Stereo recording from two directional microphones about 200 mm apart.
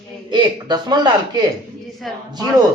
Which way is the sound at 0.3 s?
20° right (ahead or behind).